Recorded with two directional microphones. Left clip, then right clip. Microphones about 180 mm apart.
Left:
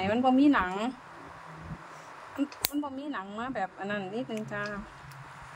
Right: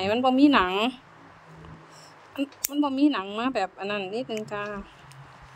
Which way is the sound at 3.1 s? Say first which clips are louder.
Right 8 dB; 65° right (ahead or behind).